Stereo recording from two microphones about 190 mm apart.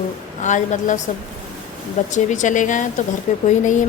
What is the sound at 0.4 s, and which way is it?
Speech, 40° left (ahead or behind).